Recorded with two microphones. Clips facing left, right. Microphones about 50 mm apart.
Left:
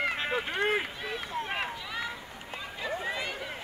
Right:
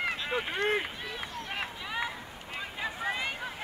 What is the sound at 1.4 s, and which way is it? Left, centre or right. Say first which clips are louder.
Run: left 4 dB; centre.